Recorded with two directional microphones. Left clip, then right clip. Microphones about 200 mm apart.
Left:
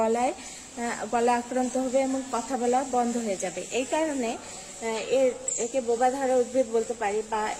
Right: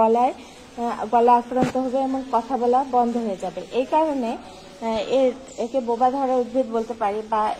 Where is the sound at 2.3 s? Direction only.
35° left (ahead or behind).